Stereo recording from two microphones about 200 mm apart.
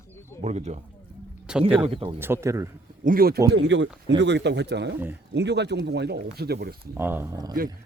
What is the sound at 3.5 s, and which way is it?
A man's voice, 60° right (ahead or behind).